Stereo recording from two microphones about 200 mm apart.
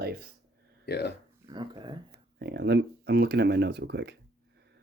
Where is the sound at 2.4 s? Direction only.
55° right (ahead or behind).